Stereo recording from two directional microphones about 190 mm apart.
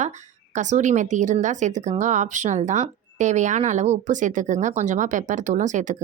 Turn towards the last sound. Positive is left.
turn(degrees=-40)  # may be behind; listen again after turning